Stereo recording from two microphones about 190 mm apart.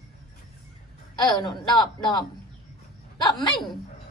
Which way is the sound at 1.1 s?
25° left (ahead or behind).